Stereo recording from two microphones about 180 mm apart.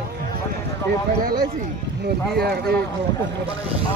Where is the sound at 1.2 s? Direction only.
55° right (ahead or behind).